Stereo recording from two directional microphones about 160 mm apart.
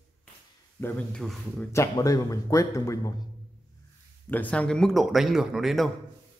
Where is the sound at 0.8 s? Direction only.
5° left (ahead or behind).